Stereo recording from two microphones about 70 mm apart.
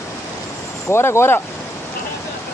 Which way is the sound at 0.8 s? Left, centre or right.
Left.